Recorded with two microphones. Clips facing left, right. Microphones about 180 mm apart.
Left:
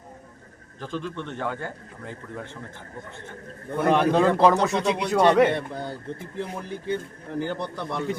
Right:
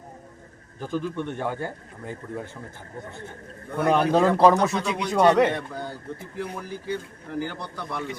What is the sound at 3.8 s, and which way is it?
A man's voice, centre (ahead or behind).